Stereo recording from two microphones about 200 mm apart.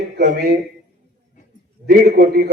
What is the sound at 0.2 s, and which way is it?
Speech, 45° right (ahead or behind).